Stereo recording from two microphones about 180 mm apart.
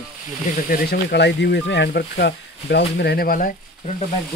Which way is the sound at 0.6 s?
65° left (ahead or behind).